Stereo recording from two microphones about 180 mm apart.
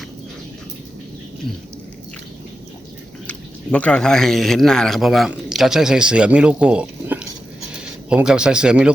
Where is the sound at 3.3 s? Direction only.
5° left (ahead or behind).